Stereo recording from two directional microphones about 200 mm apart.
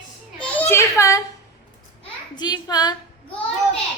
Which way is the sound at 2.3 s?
20° left (ahead or behind).